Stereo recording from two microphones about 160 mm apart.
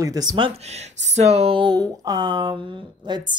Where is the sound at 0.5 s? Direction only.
45° right (ahead or behind).